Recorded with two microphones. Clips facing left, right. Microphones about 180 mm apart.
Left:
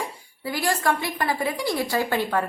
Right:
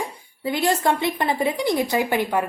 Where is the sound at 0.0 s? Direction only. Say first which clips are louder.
Right 4 dB; 20° right (ahead or behind).